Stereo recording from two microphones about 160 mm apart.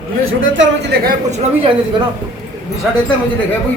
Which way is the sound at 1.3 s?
45° right (ahead or behind).